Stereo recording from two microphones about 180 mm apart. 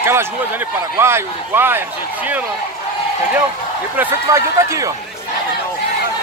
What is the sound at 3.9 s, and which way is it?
Speech, 15° right (ahead or behind).